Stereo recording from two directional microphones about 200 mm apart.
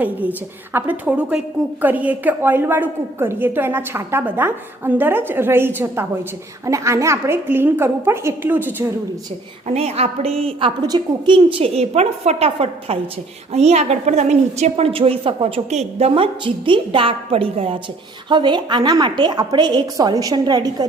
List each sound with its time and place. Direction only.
0.0 s a woman's voice: 10° right (ahead or behind)
9.6 s a woman's voice: 30° right (ahead or behind)